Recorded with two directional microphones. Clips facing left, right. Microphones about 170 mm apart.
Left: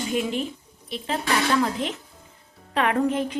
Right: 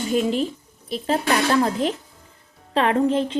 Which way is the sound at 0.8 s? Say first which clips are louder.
Right 5 dB; 40° right (ahead or behind).